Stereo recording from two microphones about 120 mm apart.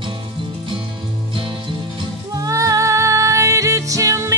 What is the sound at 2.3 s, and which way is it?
Music, 30° right (ahead or behind).